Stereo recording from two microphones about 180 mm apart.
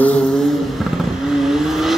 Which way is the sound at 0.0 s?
5° left (ahead or behind).